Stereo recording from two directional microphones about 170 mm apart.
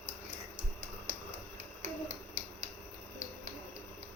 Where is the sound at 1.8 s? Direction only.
45° right (ahead or behind).